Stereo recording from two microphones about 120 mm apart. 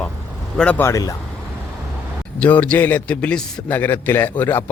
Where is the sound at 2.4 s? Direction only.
10° left (ahead or behind).